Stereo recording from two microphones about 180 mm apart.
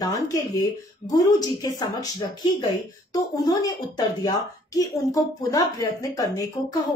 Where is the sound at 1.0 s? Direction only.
20° left (ahead or behind).